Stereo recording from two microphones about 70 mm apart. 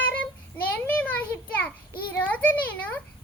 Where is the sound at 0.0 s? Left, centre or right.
Left.